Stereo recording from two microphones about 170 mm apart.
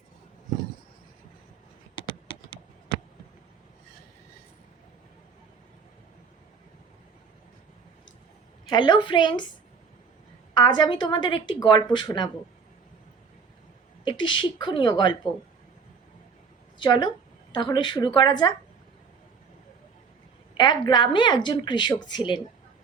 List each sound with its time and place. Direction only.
2.0 s computer keyboard: 30° left (ahead or behind)
8.7 s a woman's voice: 25° left (ahead or behind)
10.5 s a woman's voice: 25° left (ahead or behind)
14.0 s a woman's voice: 30° left (ahead or behind)
16.7 s a woman's voice: 25° left (ahead or behind)
20.6 s a woman's voice: 25° left (ahead or behind)